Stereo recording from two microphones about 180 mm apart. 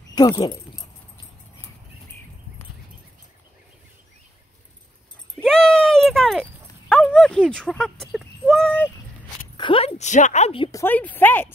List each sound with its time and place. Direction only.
0.4 s dog: 25° left (ahead or behind)
5.3 s a sound: centre (ahead or behind)
9.6 s a woman's voice: 30° left (ahead or behind)
10.7 s speech: 10° left (ahead or behind)